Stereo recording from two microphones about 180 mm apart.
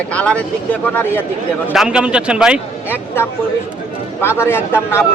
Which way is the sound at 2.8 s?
10° left (ahead or behind).